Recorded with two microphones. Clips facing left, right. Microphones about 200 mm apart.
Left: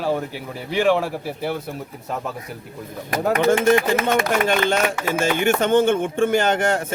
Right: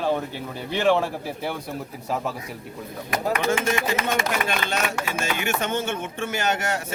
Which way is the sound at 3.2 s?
55° left (ahead or behind).